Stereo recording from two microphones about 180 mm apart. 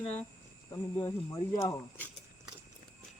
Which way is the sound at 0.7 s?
15° left (ahead or behind).